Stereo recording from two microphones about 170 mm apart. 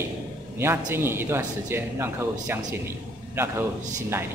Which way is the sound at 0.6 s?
15° right (ahead or behind).